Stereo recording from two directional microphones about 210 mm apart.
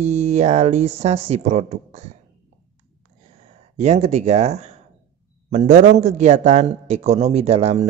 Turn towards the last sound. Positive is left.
turn(degrees=-30)  # may be behind; listen again after turning